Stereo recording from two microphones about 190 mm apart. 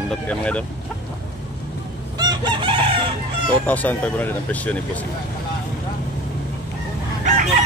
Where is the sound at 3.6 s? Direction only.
10° left (ahead or behind).